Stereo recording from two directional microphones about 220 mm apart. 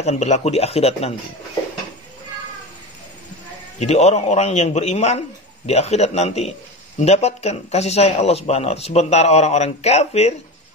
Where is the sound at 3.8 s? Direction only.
30° left (ahead or behind).